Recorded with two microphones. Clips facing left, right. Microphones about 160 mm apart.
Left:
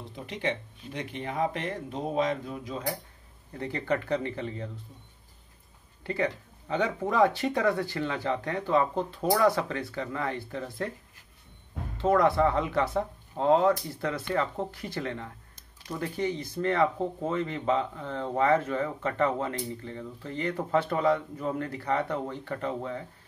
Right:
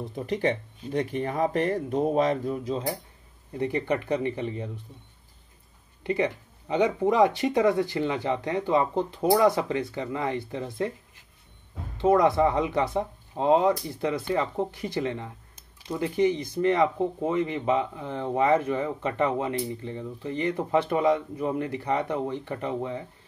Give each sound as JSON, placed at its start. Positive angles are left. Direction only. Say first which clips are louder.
{"t": 0.1, "sound": "speech", "louder": "right 5 dB", "side_deg": -40}
{"t": 3.5, "sound": "speech", "louder": "right 3 dB", "side_deg": -20}
{"t": 6.0, "sound": "speech", "louder": "right 3 dB", "side_deg": -20}
{"t": 12.0, "sound": "speech", "louder": "right 3 dB", "side_deg": -15}